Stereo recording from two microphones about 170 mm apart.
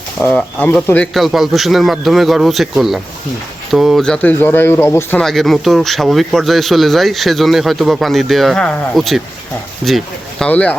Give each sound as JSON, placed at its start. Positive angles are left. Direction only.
{"t": 0.2, "sound": "speech", "side_deg": 10}
{"t": 5.2, "sound": "speech", "side_deg": 0}